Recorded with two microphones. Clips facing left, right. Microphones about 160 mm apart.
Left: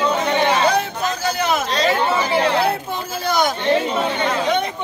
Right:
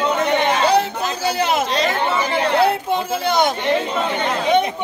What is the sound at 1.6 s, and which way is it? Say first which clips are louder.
Speech: right 2 dB; 25° right (ahead or behind).